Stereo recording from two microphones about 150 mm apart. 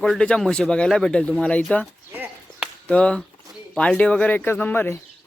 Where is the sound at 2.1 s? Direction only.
10° right (ahead or behind).